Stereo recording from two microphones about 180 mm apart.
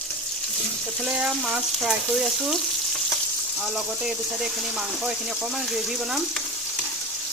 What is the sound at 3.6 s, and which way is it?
Speech, 5° right (ahead or behind).